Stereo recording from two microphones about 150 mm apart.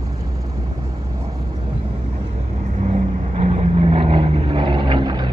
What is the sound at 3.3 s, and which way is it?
Vehicle, 40° right (ahead or behind).